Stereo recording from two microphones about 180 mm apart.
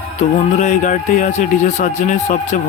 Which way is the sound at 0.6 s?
45° left (ahead or behind).